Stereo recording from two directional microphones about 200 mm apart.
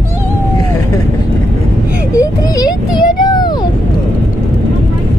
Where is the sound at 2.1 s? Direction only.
20° left (ahead or behind).